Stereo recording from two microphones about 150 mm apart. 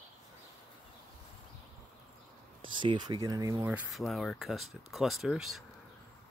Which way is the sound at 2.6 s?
30° right (ahead or behind).